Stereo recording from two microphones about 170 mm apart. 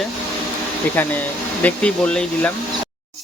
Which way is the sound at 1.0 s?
10° left (ahead or behind).